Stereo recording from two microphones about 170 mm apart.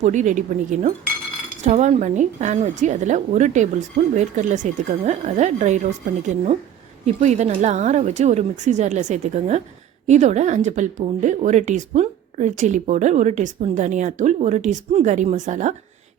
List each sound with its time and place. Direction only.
0.0 s speech: 45° right (ahead or behind)
7.0 s speech: 45° right (ahead or behind)